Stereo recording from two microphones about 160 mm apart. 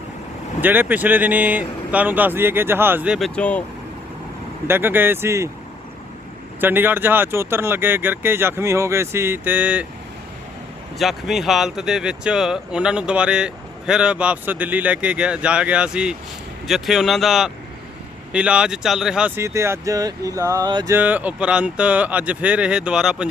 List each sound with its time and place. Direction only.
0.6 s speech: 10° right (ahead or behind)
3.2 s speech: 5° left (ahead or behind)
4.7 s speech: 15° right (ahead or behind)
6.6 s speech: 10° right (ahead or behind)
10.9 s speech: centre (ahead or behind)
19.4 s speech: 20° right (ahead or behind)
20.9 s speech: 10° right (ahead or behind)